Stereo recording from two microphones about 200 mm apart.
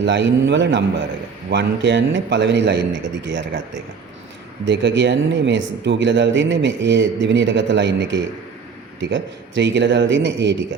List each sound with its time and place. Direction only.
0.0 s speech: 60° right (ahead or behind)
4.6 s speech: 65° right (ahead or behind)